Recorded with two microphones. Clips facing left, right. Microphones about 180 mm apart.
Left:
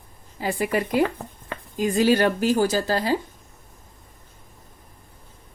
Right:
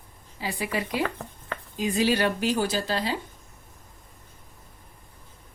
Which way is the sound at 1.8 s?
45° left (ahead or behind).